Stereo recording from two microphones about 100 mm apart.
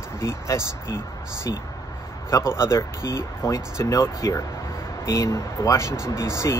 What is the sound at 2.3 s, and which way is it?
Speech, 30° left (ahead or behind).